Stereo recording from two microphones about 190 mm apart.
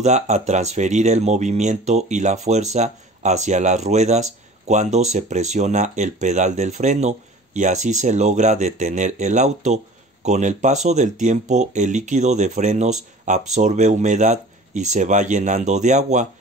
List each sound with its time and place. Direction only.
0.0 s speech: 35° right (ahead or behind)